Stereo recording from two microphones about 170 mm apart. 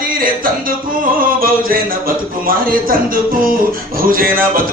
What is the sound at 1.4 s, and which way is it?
Speech, 60° right (ahead or behind).